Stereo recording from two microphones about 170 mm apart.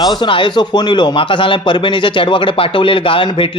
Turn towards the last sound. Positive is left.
turn(degrees=30)  # may be behind; listen again after turning